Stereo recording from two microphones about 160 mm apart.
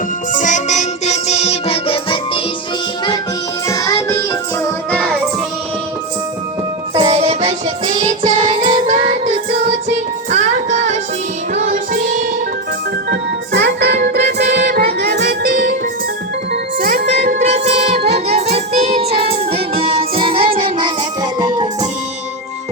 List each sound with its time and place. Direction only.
0.3 s music: 50° left (ahead or behind); by 2.4 s 35° left (ahead or behind)
3.7 s music: 20° left (ahead or behind)
7.1 s music: 40° right (ahead or behind); by 12.2 s 55° right (ahead or behind)
13.1 s music: 90° right; by 15.7 s 60° right (ahead or behind)
16.5 s music: 75° right (ahead or behind)
17.2 s music: 50° right (ahead or behind); by 21.7 s 25° right (ahead or behind)